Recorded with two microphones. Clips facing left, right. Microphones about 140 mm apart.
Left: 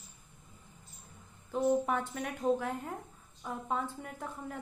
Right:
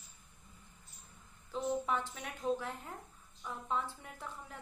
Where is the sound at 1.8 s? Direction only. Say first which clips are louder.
Left 4 dB; 55° left (ahead or behind).